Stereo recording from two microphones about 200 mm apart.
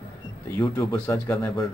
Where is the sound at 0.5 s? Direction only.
15° left (ahead or behind).